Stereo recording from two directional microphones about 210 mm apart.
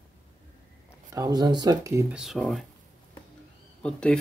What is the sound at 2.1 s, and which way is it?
Speech, centre (ahead or behind).